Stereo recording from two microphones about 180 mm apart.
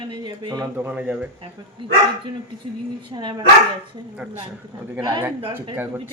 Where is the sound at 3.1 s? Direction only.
25° right (ahead or behind).